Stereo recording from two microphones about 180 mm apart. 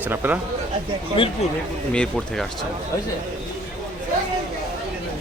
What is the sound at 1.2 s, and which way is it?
Speech, 30° left (ahead or behind).